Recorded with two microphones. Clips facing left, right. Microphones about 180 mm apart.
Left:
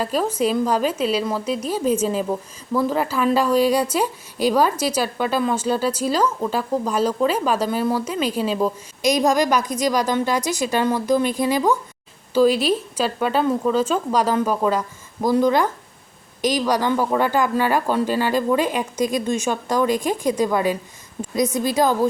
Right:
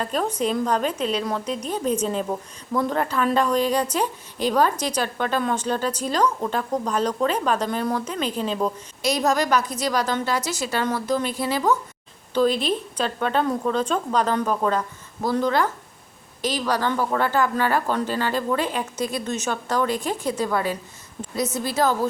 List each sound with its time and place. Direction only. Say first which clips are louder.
0.0 s speech: left 3 dB; 5° left (ahead or behind)